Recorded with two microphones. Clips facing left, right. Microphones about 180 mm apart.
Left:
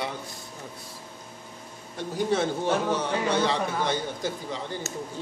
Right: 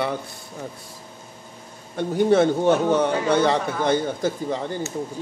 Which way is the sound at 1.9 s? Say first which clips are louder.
Right 8 dB; 60° right (ahead or behind).